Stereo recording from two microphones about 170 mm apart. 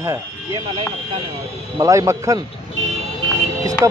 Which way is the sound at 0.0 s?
20° right (ahead or behind).